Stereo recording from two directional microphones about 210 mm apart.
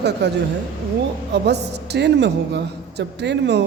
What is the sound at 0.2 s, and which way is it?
A woman's voice, 55° right (ahead or behind).